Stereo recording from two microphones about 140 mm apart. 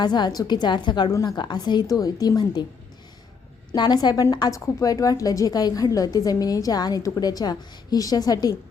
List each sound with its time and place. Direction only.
0.0 s a woman's voice: 30° left (ahead or behind)
3.8 s a woman's voice: 30° left (ahead or behind)